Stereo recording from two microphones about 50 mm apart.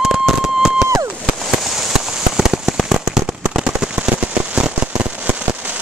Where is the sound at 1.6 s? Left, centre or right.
Centre; by 4.6 s right.